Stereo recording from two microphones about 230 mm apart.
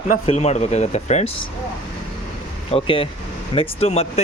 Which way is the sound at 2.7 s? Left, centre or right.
Left.